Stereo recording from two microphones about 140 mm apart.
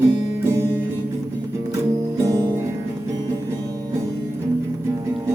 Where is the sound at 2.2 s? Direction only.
25° right (ahead or behind).